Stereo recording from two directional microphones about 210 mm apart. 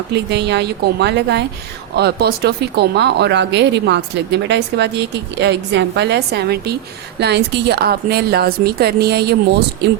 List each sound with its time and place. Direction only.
0.1 s speech: 55° right (ahead or behind)